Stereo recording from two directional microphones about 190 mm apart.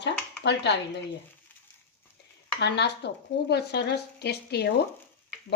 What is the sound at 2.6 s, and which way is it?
Speech, 65° left (ahead or behind).